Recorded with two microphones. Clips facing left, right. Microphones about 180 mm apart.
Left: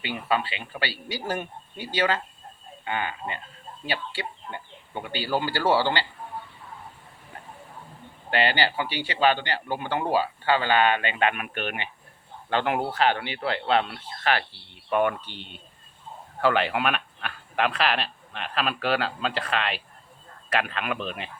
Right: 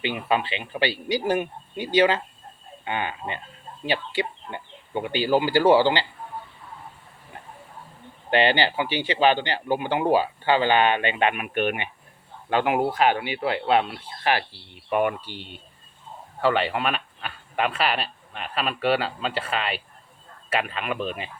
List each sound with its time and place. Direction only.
0.0 s speech: 20° right (ahead or behind)
8.3 s speech: 20° right (ahead or behind); by 21.2 s centre (ahead or behind)